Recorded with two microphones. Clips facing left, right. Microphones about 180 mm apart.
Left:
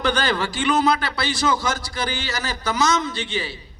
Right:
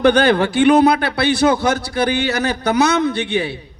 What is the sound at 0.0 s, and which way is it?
A man's voice, 60° right (ahead or behind).